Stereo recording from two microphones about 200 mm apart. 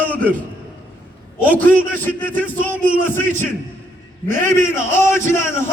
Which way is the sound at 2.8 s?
40° right (ahead or behind).